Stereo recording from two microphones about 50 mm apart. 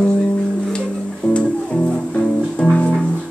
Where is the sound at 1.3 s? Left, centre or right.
Left.